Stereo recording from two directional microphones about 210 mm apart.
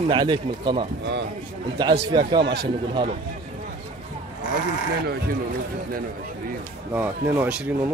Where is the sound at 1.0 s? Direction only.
55° right (ahead or behind).